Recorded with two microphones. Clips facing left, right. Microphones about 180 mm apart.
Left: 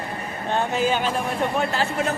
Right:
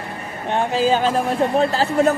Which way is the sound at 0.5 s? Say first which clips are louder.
Right 4 dB; 30° right (ahead or behind).